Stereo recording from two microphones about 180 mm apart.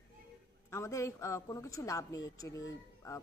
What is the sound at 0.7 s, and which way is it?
Speech, 15° left (ahead or behind).